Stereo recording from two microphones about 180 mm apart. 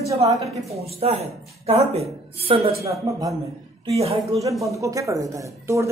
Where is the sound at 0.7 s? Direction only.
35° right (ahead or behind).